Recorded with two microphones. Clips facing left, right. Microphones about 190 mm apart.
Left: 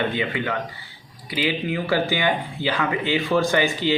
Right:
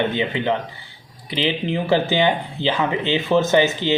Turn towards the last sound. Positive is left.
turn(degrees=-20)  # may be behind; listen again after turning